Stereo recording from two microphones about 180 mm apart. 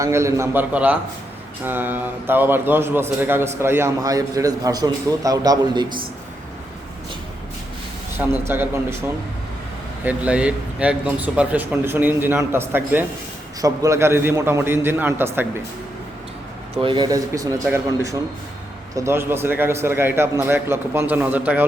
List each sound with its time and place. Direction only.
0.0 s a man's voice: 15° right (ahead or behind)
8.2 s a man's voice: 10° right (ahead or behind)
16.8 s a man's voice: 25° right (ahead or behind); by 21.7 s 10° right (ahead or behind)